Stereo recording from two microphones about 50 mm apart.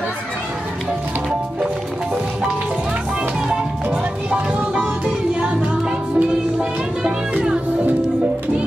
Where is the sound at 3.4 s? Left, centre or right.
Centre.